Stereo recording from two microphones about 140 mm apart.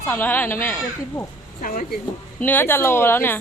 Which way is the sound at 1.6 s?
75° left (ahead or behind).